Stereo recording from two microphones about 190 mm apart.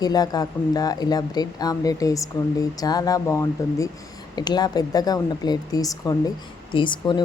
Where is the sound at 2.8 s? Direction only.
20° left (ahead or behind).